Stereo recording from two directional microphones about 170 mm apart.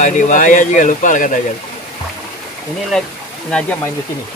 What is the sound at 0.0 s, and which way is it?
Speech, 45° left (ahead or behind).